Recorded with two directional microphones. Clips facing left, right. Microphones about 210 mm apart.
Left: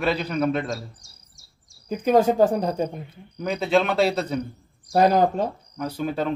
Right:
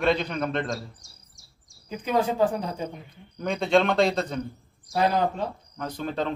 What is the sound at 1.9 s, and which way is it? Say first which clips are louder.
Speech: left 7 dB; 45° left (ahead or behind).